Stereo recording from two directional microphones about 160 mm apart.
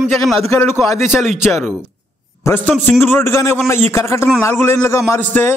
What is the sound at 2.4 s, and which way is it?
A man's voice, 10° left (ahead or behind).